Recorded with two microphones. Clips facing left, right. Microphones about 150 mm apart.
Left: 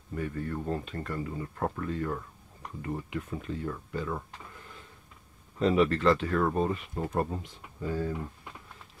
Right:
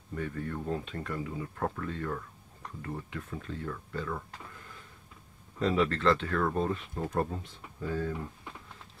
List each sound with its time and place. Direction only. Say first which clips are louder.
0.1 s speech: left 2 dB; 5° left (ahead or behind)
1.6 s speech: left 3 dB; 10° left (ahead or behind)
5.6 s speech: left 3 dB; 15° left (ahead or behind)